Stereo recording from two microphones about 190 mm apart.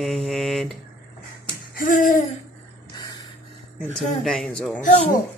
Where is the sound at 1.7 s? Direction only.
45° left (ahead or behind).